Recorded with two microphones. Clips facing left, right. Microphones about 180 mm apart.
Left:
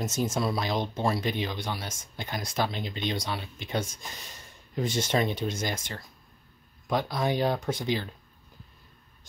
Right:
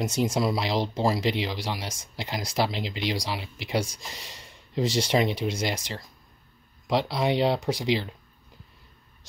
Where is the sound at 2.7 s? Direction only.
90° right.